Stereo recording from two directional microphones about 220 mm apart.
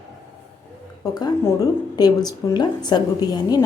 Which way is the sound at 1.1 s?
15° left (ahead or behind).